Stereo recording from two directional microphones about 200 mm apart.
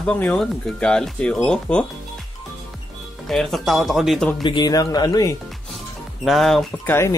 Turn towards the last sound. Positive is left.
turn(degrees=0)  # may be behind; listen again after turning